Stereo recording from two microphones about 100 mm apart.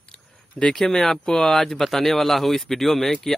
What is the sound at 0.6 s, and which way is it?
Speech, 5° left (ahead or behind).